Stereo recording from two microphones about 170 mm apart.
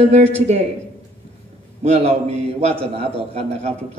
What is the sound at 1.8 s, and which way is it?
A man's voice, 40° right (ahead or behind).